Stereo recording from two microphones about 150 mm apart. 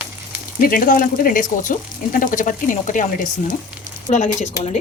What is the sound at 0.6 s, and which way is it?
Speech, 70° left (ahead or behind).